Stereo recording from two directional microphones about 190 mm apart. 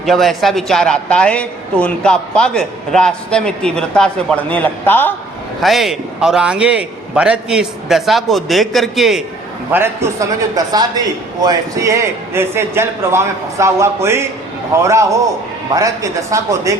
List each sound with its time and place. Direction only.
0.0 s a man's voice: centre (ahead or behind)
5.6 s a man's voice: centre (ahead or behind)
9.7 s a man's voice: 15° right (ahead or behind)